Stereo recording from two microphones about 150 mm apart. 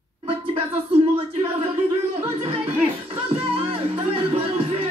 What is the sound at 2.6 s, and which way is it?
Speech, 35° right (ahead or behind).